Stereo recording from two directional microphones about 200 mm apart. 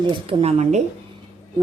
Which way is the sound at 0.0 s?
25° right (ahead or behind).